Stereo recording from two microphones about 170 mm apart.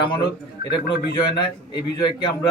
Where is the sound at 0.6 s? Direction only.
60° left (ahead or behind).